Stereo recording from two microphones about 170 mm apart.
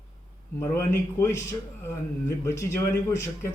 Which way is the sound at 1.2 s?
20° left (ahead or behind).